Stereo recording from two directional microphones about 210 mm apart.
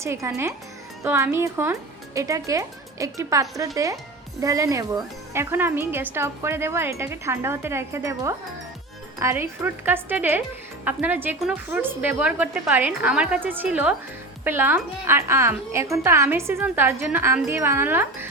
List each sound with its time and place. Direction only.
0.0 s a woman's voice: 15° right (ahead or behind)